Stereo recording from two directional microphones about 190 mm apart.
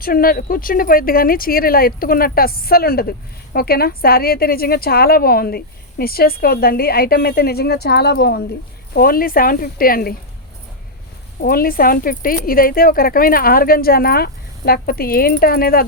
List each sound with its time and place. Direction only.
0.0 s speech: 50° left (ahead or behind)
11.3 s speech: 50° left (ahead or behind)